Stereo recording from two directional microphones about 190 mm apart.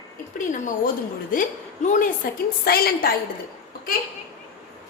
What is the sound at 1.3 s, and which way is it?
Music, 45° left (ahead or behind).